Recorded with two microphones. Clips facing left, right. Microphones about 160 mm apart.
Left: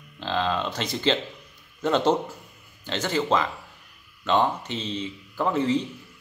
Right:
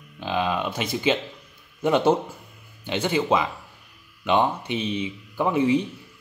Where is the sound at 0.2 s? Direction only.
15° right (ahead or behind).